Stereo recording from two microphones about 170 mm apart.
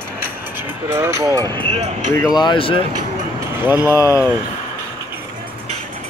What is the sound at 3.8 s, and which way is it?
Speech, 20° left (ahead or behind).